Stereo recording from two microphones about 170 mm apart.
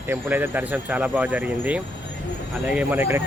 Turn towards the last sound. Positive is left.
turn(degrees=-10)  # may be behind; listen again after turning